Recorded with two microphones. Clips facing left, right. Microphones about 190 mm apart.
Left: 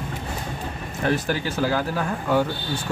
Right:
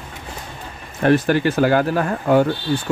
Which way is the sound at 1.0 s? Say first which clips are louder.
Right 8 dB; 60° right (ahead or behind).